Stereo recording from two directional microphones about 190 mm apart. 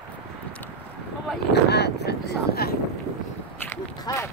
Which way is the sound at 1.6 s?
60° left (ahead or behind).